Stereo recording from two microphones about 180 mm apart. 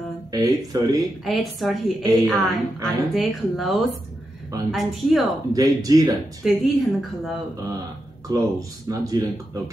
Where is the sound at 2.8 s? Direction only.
Centre (ahead or behind).